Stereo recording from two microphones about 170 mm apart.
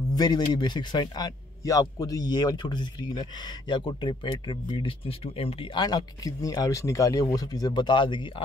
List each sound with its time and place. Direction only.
0.1 s a man's voice: 25° left (ahead or behind)